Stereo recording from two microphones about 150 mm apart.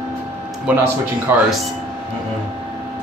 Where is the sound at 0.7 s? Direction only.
10° right (ahead or behind).